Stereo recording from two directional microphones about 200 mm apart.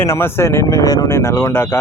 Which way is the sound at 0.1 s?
10° left (ahead or behind).